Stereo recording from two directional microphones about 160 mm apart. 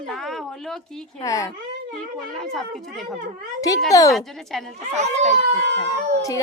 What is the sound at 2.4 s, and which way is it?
Speech, centre (ahead or behind).